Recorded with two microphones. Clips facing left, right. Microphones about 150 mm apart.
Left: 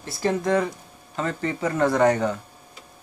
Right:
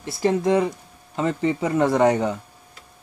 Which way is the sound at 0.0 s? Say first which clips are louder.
Right 3 dB; 20° right (ahead or behind).